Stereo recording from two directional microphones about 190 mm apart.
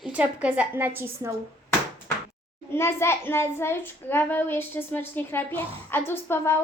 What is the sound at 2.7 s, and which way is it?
A child's voice, 15° left (ahead or behind).